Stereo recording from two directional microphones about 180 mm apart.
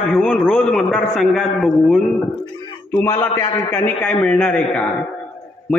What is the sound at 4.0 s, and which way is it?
Speech, 5° left (ahead or behind).